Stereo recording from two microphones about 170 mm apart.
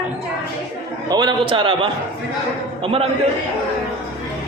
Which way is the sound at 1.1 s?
25° right (ahead or behind).